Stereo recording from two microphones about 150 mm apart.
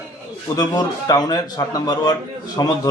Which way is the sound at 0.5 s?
25° left (ahead or behind).